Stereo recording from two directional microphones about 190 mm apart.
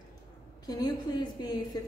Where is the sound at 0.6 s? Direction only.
20° left (ahead or behind).